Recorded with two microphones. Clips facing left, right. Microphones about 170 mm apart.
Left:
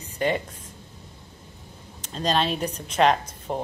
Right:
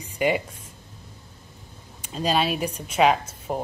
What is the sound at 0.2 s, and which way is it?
Speech, 10° right (ahead or behind).